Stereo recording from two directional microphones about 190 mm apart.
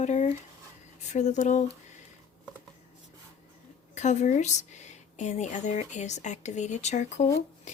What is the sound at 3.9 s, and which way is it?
A woman's voice, 40° left (ahead or behind).